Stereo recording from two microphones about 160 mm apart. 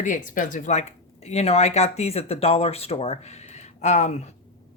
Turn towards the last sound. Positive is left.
turn(degrees=45)  # may be behind; listen again after turning